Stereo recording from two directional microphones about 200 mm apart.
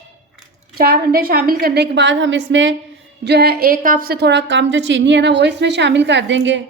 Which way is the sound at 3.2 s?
55° right (ahead or behind).